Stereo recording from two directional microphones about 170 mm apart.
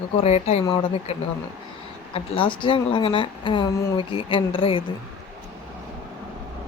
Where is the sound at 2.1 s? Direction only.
30° left (ahead or behind).